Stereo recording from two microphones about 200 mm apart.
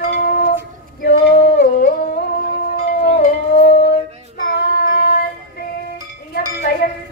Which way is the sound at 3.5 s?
55° left (ahead or behind).